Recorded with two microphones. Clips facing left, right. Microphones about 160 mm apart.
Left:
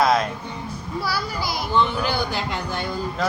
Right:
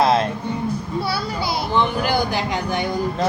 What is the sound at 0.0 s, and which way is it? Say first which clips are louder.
Music: right 2 dB; 30° right (ahead or behind).